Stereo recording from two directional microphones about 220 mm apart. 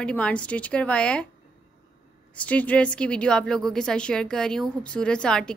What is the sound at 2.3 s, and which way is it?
A woman's voice, 5° left (ahead or behind).